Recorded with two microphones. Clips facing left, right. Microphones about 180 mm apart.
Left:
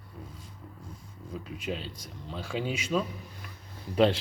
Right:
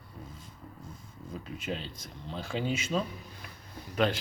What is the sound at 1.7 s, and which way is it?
Speech, 5° left (ahead or behind).